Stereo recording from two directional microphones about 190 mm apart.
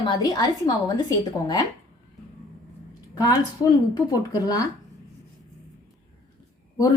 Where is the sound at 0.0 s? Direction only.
20° left (ahead or behind).